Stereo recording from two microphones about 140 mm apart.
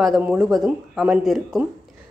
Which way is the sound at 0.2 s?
10° right (ahead or behind).